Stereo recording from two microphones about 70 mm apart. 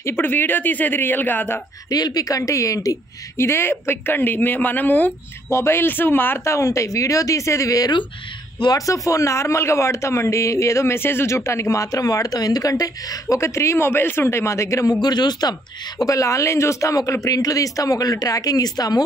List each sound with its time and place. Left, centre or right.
0.0 s speech: left
1.9 s speech: left
3.3 s speech: left
5.5 s speech: left
8.5 s a man's voice: left
8.8 s speech: left
11.0 s speech: left
14.9 s a man's voice: left
16.0 s speech: left